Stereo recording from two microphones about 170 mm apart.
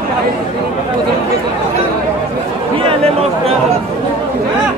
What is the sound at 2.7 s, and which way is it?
Chatter, 35° right (ahead or behind).